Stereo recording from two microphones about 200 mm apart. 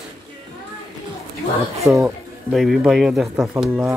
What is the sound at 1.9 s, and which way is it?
Speech, 5° right (ahead or behind).